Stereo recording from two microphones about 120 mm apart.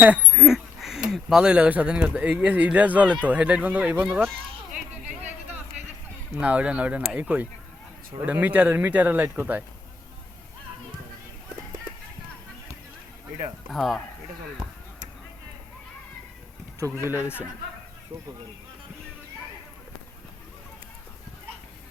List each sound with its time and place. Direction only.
0.0 s a sound: 10° right (ahead or behind)
1.1 s speech: 5° right (ahead or behind)
6.4 s speech: 10° right (ahead or behind)
13.7 s speech: centre (ahead or behind)
16.8 s speech: 20° right (ahead or behind)